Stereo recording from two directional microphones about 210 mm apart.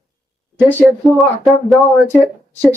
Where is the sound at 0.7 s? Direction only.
5° left (ahead or behind).